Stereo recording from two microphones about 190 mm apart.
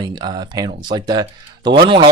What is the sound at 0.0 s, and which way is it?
Speech, 25° right (ahead or behind).